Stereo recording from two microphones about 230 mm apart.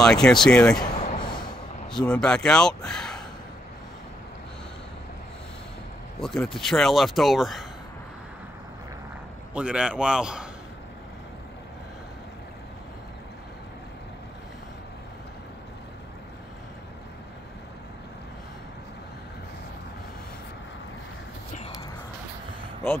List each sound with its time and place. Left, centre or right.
0.0 s speech: centre
0.9 s a sound: centre
1.9 s speech: centre
6.2 s speech: centre
9.5 s speech: centre